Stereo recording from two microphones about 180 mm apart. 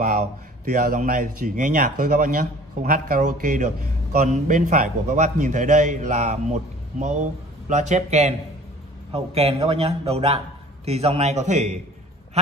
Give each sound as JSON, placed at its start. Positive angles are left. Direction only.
{"t": 0.0, "sound": "a man's voice", "side_deg": -45}